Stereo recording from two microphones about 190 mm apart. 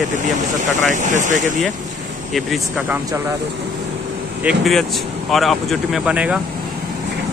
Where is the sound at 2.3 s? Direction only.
Centre (ahead or behind).